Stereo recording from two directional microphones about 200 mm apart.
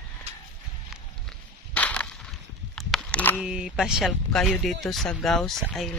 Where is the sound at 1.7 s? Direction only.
5° left (ahead or behind).